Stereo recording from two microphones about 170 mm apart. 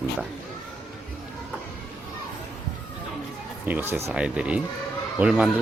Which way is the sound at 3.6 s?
10° right (ahead or behind).